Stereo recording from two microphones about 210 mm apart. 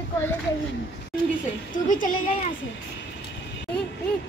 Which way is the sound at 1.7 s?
40° left (ahead or behind).